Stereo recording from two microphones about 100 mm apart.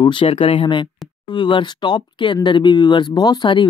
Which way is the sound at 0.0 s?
60° left (ahead or behind).